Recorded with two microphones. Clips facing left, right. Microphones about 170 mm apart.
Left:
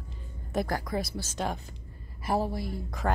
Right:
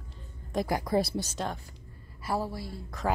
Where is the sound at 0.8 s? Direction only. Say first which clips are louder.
Right 5 dB; 30° right (ahead or behind).